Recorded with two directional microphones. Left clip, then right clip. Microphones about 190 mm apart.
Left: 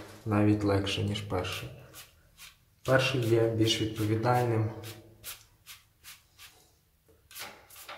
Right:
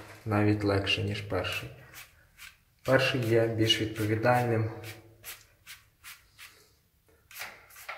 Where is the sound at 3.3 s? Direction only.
5° right (ahead or behind).